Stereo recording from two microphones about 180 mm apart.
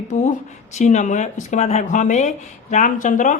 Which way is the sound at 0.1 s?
40° left (ahead or behind).